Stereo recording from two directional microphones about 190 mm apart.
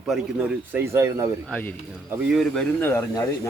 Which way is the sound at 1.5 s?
10° left (ahead or behind).